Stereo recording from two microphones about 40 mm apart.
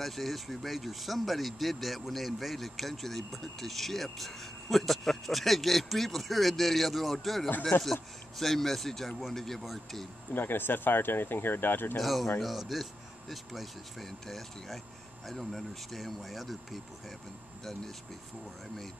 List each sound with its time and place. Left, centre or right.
0.0 s speech: centre
10.3 s speech: left
12.0 s speech: centre